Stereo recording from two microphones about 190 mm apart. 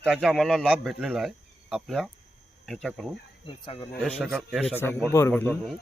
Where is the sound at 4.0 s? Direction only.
5° left (ahead or behind).